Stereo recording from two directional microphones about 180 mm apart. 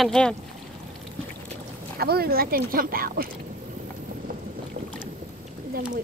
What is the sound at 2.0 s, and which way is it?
Speech, 60° right (ahead or behind).